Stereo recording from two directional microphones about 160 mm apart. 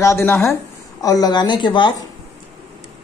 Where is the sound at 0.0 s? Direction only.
15° left (ahead or behind).